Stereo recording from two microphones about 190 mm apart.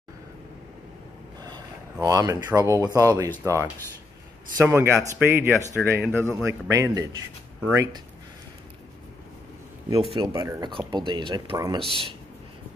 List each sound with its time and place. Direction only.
1.4 s speech: 20° right (ahead or behind)
10.1 s speech: 20° right (ahead or behind)
11.8 s speech: 25° left (ahead or behind)